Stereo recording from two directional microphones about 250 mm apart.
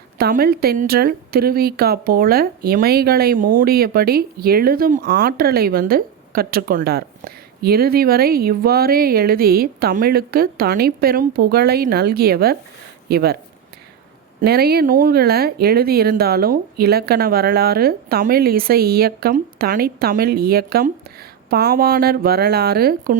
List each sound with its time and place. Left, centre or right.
0.2 s a woman's voice: right
14.4 s a woman's voice: right